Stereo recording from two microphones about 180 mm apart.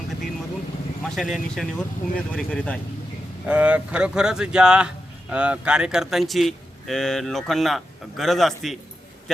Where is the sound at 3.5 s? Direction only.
5° right (ahead or behind).